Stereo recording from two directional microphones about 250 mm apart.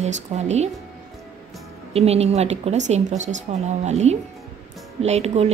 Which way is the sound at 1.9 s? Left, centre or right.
Right.